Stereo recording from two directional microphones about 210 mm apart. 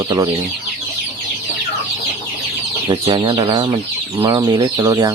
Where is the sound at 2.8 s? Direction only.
20° right (ahead or behind).